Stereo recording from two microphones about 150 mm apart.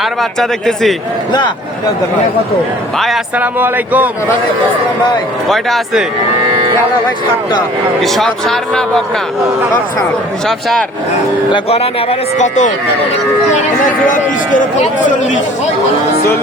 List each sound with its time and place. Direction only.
0.0 s a man's voice: centre (ahead or behind)
3.0 s a man's voice: 5° right (ahead or behind)
5.5 s a man's voice: centre (ahead or behind)
8.0 s a man's voice: centre (ahead or behind)
10.4 s a man's voice: 5° left (ahead or behind)
11.5 s speech: 40° left (ahead or behind)
12.4 s speech: 55° left (ahead or behind)